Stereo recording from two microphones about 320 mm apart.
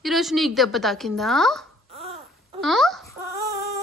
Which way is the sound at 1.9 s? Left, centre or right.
Centre.